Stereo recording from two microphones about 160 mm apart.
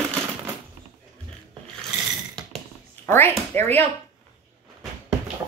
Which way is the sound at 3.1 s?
15° left (ahead or behind).